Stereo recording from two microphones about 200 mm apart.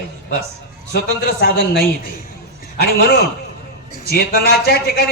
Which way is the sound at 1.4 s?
55° left (ahead or behind).